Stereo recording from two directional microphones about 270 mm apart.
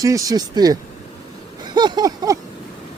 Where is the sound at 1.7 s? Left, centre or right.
Centre.